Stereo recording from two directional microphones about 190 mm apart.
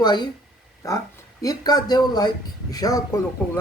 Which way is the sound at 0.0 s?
20° left (ahead or behind).